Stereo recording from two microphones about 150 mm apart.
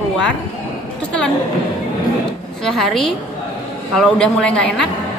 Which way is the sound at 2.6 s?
Centre (ahead or behind).